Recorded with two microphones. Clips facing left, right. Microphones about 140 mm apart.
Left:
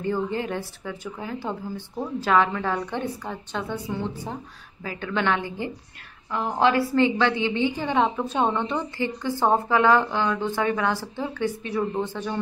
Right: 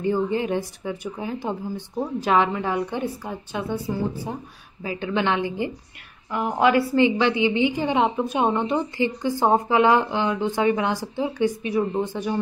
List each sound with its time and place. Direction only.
0.0 s a woman's voice: 15° right (ahead or behind)
7.0 s a woman's voice: 15° right (ahead or behind)